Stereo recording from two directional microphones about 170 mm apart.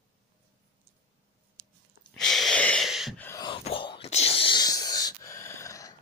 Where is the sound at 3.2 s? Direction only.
15° left (ahead or behind).